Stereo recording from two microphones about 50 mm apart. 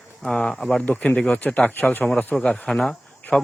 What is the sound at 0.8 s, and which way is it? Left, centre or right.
Speech, left.